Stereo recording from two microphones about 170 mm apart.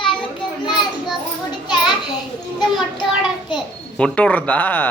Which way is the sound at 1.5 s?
25° left (ahead or behind).